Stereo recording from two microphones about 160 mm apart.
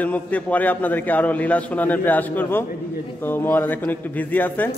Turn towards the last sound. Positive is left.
turn(degrees=10)  # may be behind; listen again after turning